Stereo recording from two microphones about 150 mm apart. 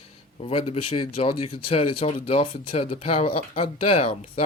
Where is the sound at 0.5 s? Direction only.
40° left (ahead or behind).